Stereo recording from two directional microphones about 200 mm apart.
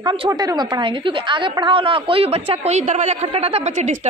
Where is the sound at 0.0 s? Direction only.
25° right (ahead or behind).